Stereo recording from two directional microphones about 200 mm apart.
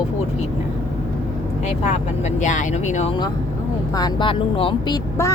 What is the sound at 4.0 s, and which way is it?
Speech, 20° left (ahead or behind).